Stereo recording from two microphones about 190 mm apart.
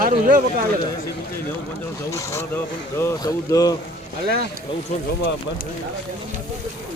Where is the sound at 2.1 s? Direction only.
15° left (ahead or behind).